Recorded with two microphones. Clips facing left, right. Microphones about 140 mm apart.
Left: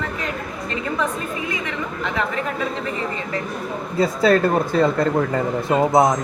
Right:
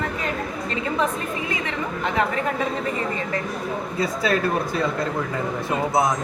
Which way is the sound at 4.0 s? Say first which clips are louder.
Left 7 dB; 35° left (ahead or behind).